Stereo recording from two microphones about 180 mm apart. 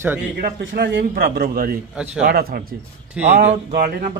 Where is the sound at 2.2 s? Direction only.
60° right (ahead or behind).